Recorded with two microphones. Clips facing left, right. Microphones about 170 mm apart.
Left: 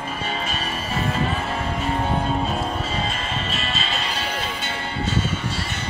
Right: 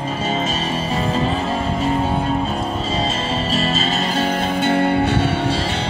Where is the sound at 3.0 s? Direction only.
30° right (ahead or behind).